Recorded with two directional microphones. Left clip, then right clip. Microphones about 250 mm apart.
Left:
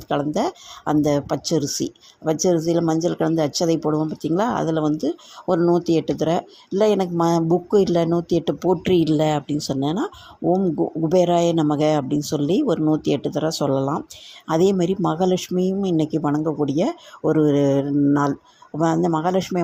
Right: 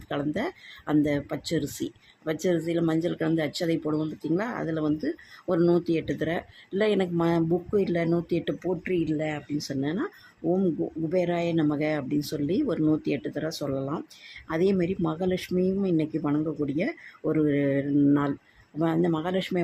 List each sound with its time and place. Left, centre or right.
0.1 s speech: centre